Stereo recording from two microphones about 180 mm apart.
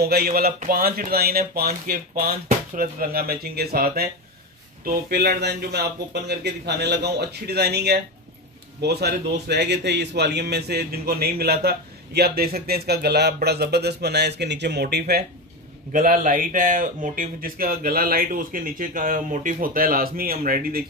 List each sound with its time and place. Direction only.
0.0 s a man's voice: 60° right (ahead or behind)
15.9 s speech: 50° right (ahead or behind)